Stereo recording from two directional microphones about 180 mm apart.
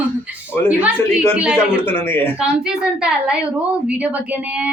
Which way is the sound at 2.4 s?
5° right (ahead or behind).